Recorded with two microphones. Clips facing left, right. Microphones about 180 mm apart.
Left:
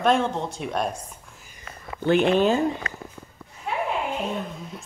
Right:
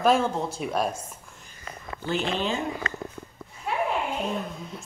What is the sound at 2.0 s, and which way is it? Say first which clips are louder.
Speech: left 9 dB; 60° left (ahead or behind).